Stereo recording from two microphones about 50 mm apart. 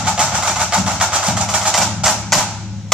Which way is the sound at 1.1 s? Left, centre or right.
Centre.